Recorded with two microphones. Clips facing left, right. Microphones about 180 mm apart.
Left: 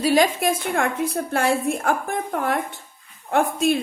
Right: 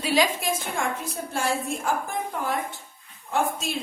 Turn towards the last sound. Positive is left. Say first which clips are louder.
# left 7 dB
turn(degrees=55)  # may be behind; listen again after turning